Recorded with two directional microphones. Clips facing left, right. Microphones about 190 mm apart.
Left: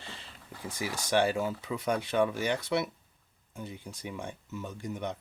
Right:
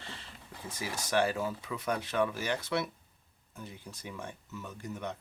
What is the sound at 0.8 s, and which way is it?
Speech, 25° left (ahead or behind).